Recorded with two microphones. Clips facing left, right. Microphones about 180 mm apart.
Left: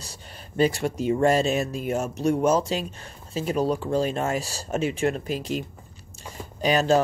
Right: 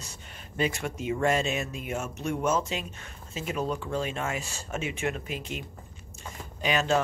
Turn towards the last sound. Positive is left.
turn(degrees=35)  # may be behind; listen again after turning